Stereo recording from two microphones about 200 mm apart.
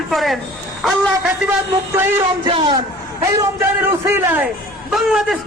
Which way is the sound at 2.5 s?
25° right (ahead or behind).